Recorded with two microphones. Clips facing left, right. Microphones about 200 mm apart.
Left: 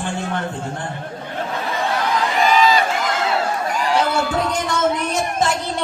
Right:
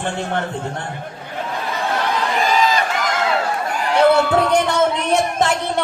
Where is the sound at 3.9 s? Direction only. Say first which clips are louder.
Right 7 dB; 60° right (ahead or behind).